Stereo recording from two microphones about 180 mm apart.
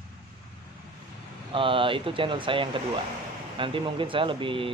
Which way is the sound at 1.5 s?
30° right (ahead or behind).